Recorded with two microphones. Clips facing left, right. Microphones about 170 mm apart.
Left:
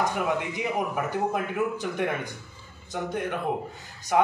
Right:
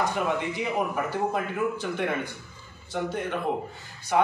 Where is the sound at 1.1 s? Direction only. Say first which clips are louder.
Left 1 dB; 15° left (ahead or behind).